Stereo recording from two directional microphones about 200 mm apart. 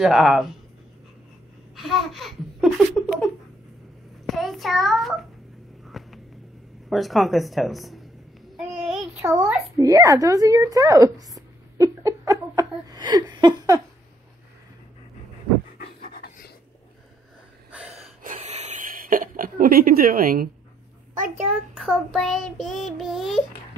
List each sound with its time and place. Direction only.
0.0 s child singing: 5° right (ahead or behind)
1.8 s laughter: centre (ahead or behind)
4.3 s a child's voice: centre (ahead or behind)
5.9 s a sound: centre (ahead or behind)
6.9 s child singing: centre (ahead or behind)
8.5 s a child's voice: centre (ahead or behind); by 13.7 s 20° right (ahead or behind)
16.0 s pant: 50° left (ahead or behind)
17.6 s gasp: 5° right (ahead or behind)
17.9 s a sound: 35° right (ahead or behind)
21.7 s child singing: centre (ahead or behind)